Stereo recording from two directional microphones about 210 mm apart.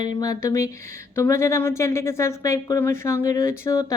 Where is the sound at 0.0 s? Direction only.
20° left (ahead or behind).